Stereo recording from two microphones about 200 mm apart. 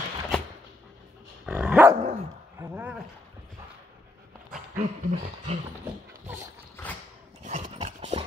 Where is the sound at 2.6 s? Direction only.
10° right (ahead or behind).